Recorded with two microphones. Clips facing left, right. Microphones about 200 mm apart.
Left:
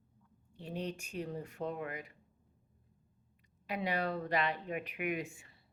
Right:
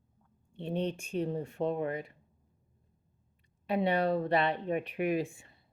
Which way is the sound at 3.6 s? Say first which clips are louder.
Right 7 dB; 30° right (ahead or behind).